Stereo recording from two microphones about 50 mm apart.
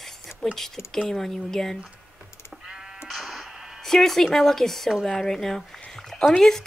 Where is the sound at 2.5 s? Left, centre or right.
Centre.